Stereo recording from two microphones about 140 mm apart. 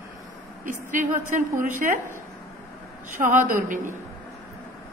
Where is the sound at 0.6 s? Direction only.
65° right (ahead or behind).